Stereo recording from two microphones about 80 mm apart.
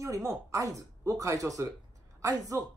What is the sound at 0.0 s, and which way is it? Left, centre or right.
Speech, right.